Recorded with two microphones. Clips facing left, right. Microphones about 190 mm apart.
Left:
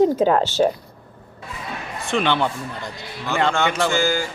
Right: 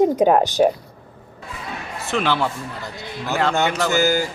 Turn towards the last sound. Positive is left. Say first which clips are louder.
# right 2 dB
turn(degrees=-40)  # may be behind; listen again after turning